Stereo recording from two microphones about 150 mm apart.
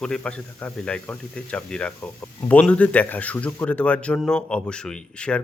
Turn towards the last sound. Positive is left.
turn(degrees=5)  # may be behind; listen again after turning